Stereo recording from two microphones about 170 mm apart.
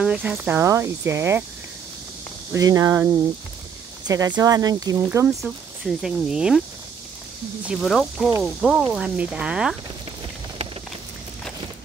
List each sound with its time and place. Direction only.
0.0 s speech: 5° right (ahead or behind)
2.5 s speech: 20° right (ahead or behind)
4.1 s speech: 20° right (ahead or behind)
5.4 s speech: centre (ahead or behind)
7.6 s speech: centre (ahead or behind)